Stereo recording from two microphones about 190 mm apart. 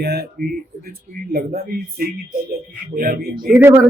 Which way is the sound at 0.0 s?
60° right (ahead or behind).